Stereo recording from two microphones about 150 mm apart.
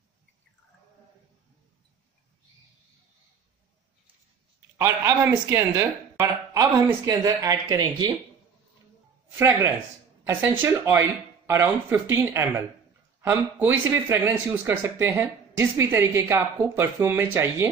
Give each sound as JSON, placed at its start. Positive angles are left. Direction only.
{"t": 4.7, "sound": "speech", "side_deg": -20}
{"t": 10.2, "sound": "speech", "side_deg": -15}